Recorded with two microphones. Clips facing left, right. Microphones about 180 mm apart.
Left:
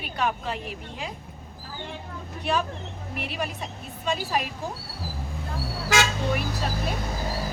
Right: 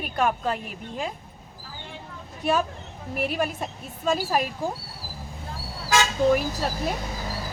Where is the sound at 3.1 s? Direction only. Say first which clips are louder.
Right 6 dB; 45° right (ahead or behind).